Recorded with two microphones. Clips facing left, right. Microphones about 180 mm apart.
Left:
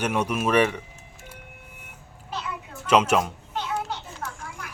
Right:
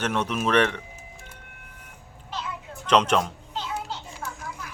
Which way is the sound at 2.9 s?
10° left (ahead or behind).